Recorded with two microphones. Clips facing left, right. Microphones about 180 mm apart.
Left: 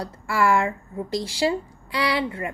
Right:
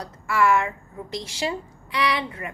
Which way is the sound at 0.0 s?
30° left (ahead or behind).